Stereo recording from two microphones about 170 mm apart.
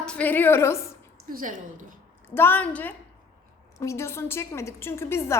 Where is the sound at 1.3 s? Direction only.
50° right (ahead or behind).